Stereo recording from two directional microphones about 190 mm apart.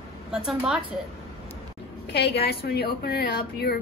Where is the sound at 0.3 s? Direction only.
5° right (ahead or behind).